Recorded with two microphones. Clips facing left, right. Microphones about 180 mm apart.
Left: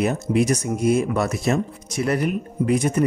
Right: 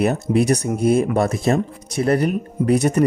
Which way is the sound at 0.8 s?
30° right (ahead or behind).